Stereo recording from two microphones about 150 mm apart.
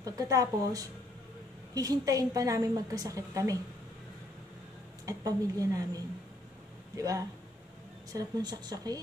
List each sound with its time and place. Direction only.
0.0 s a woman's voice: 25° right (ahead or behind)
5.0 s a woman's voice: 20° right (ahead or behind)
7.0 s a woman's voice: 20° right (ahead or behind)